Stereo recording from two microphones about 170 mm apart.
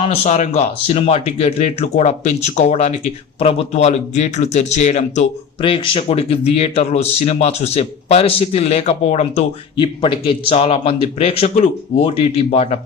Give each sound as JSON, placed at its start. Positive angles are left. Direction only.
{"t": 0.0, "sound": "speech", "side_deg": 40}
{"t": 5.6, "sound": "speech", "side_deg": 30}
{"t": 9.7, "sound": "speech", "side_deg": 30}